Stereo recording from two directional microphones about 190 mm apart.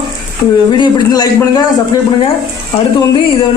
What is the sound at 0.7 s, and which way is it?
A man's voice, 20° left (ahead or behind).